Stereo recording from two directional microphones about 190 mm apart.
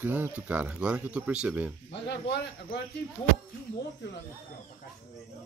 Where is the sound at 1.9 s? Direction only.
60° left (ahead or behind).